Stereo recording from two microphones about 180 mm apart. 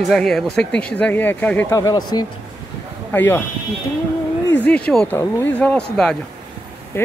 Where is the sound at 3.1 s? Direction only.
10° left (ahead or behind).